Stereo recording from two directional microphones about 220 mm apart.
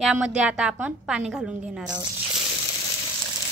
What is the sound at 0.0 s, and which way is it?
A woman's voice, 5° right (ahead or behind).